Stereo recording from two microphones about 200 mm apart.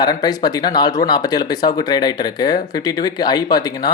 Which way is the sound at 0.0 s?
20° left (ahead or behind).